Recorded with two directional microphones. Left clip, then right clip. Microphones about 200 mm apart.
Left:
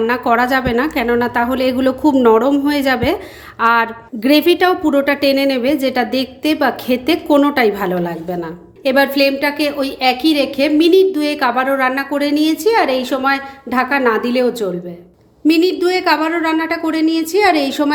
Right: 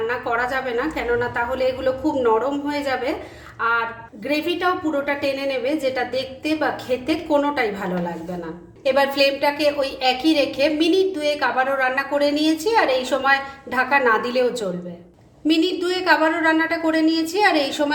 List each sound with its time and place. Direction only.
0.1 s a woman's voice: 50° left (ahead or behind)